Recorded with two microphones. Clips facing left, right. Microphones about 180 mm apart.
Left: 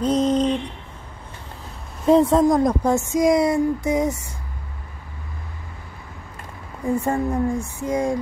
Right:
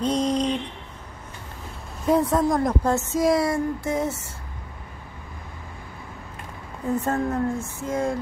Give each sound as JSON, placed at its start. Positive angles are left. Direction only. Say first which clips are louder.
{"t": 0.0, "sound": "a sound", "louder": "left 4 dB", "side_deg": 5}
{"t": 2.0, "sound": "a woman's voice", "louder": "left 5 dB", "side_deg": 25}
{"t": 6.8, "sound": "a woman's voice", "louder": "left 2 dB", "side_deg": 10}